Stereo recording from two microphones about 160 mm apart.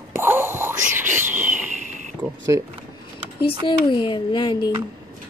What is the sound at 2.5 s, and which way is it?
Speech, 20° right (ahead or behind).